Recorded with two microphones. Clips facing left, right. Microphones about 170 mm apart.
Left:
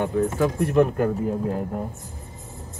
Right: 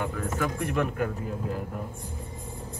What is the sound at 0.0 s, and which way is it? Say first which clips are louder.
Speech: left 8 dB; 30° left (ahead or behind).